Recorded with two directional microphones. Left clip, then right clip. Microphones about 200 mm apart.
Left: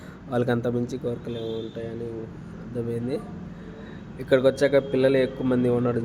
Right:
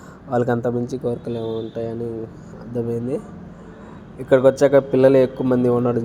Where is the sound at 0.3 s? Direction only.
10° right (ahead or behind).